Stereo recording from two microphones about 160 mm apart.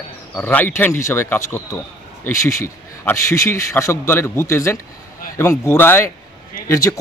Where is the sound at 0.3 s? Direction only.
10° left (ahead or behind).